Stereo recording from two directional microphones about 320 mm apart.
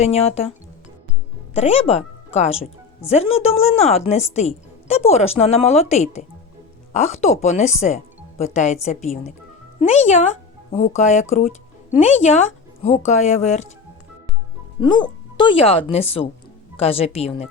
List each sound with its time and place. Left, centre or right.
0.0 s a woman's voice: centre
1.5 s a woman's voice: centre
14.8 s speech: centre